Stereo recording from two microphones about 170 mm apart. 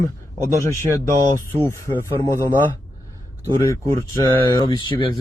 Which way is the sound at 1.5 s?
15° left (ahead or behind).